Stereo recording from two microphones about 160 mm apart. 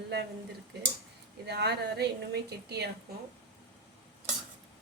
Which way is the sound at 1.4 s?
90° right.